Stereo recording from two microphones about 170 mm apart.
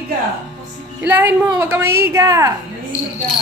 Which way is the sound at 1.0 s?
10° right (ahead or behind).